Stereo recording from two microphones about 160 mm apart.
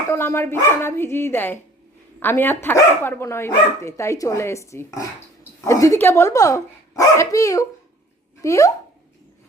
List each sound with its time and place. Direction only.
0.1 s speech: 15° left (ahead or behind)